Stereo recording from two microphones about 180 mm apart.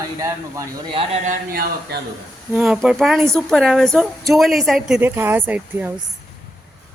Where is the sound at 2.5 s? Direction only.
5° right (ahead or behind).